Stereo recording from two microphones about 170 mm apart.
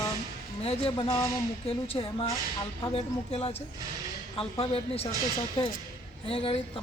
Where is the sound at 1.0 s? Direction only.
20° left (ahead or behind).